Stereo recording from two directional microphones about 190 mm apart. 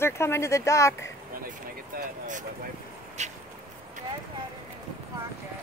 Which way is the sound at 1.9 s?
40° right (ahead or behind).